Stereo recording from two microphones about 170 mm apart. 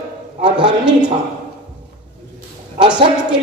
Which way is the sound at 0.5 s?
5° right (ahead or behind).